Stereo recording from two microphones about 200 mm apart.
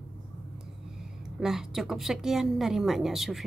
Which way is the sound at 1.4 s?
Centre (ahead or behind).